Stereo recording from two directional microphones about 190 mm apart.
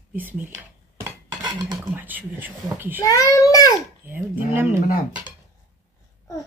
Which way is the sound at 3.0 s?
15° left (ahead or behind).